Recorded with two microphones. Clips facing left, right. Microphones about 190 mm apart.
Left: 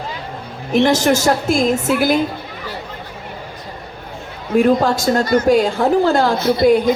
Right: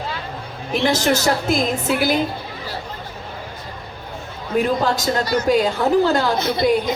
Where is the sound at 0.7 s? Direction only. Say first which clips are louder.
Left 5 dB; 45° left (ahead or behind).